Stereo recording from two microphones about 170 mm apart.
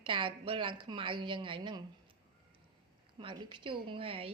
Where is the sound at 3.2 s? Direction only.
30° right (ahead or behind).